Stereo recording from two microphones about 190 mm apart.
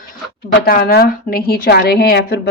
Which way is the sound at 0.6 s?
50° left (ahead or behind).